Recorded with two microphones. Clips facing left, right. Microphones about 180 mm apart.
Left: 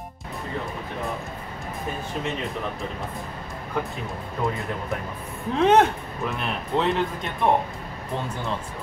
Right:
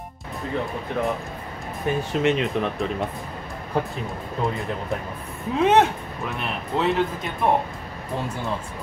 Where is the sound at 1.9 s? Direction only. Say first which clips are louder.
Right 9 dB; 80° right.